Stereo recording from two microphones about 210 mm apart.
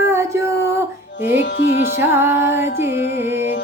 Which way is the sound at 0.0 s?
15° right (ahead or behind).